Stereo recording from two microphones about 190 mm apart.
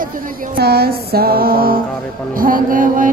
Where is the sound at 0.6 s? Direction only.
55° right (ahead or behind).